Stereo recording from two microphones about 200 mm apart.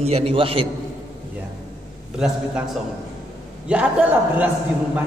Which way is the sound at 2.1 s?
5° right (ahead or behind).